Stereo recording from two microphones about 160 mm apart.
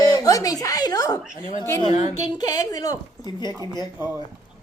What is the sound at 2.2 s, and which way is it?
Speech, 25° left (ahead or behind).